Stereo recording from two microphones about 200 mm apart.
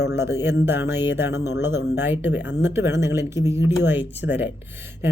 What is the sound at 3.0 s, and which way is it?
Speech, 15° right (ahead or behind).